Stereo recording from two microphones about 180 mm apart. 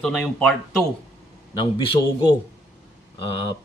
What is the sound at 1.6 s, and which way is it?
Speech, 30° left (ahead or behind).